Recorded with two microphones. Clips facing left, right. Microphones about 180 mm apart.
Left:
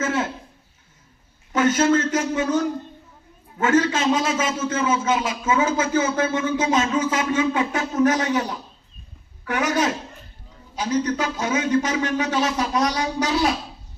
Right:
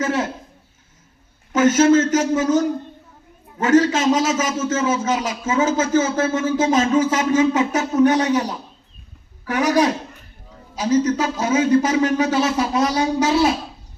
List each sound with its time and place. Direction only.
0.0 s a sound: 40° right (ahead or behind)
1.5 s a man's voice: 45° right (ahead or behind)
9.5 s a man's voice: 35° right (ahead or behind)